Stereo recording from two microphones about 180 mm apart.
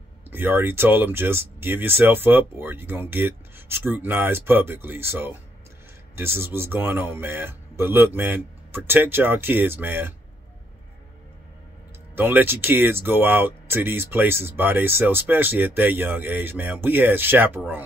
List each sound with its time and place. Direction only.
0.3 s speech: 10° right (ahead or behind)
12.2 s speech: 10° right (ahead or behind)